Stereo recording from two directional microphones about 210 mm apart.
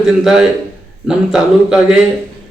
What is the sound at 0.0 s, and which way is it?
A man's voice, 5° right (ahead or behind).